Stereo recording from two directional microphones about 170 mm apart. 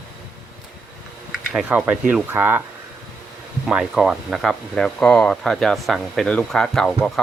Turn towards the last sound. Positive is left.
turn(degrees=5)  # may be behind; listen again after turning